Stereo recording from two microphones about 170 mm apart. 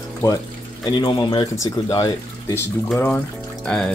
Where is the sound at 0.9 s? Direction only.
25° left (ahead or behind).